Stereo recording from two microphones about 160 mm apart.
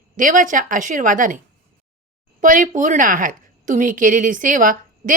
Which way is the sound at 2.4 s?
55° right (ahead or behind).